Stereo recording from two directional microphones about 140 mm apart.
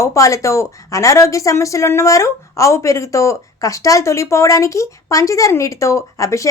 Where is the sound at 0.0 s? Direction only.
20° left (ahead or behind).